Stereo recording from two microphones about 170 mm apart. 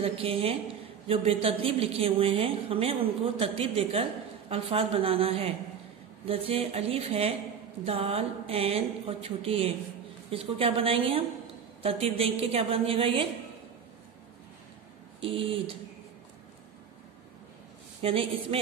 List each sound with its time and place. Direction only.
0.0 s a woman's voice: 35° right (ahead or behind)
15.1 s a woman's voice: 35° right (ahead or behind)
18.0 s a woman's voice: 35° right (ahead or behind)